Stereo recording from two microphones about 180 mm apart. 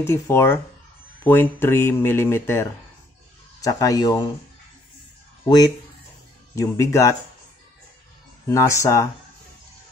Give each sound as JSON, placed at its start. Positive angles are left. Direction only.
{"t": 0.0, "sound": "speech", "side_deg": 15}
{"t": 6.5, "sound": "speech", "side_deg": 20}
{"t": 8.5, "sound": "speech", "side_deg": 15}